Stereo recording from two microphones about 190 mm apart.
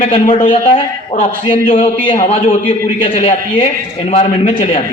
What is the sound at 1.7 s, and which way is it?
A man's voice, 35° left (ahead or behind).